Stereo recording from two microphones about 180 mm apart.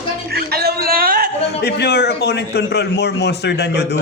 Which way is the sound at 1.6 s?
65° left (ahead or behind).